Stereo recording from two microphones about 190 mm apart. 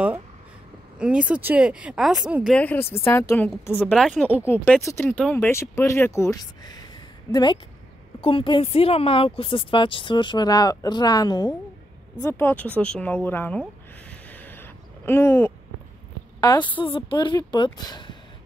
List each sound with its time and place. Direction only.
0.9 s speech: 5° right (ahead or behind)
2.5 s speech: 10° left (ahead or behind)
4.8 s speech: 15° left (ahead or behind)
8.2 s speech: 30° left (ahead or behind); by 13.7 s 10° left (ahead or behind)
14.3 s owl: 10° left (ahead or behind)
16.3 s speech: 20° left (ahead or behind)